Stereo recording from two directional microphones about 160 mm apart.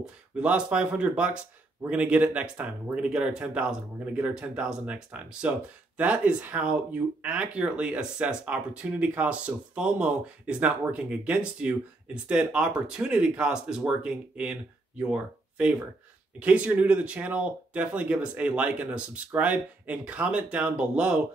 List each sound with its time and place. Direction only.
0.0 s speech: 5° right (ahead or behind)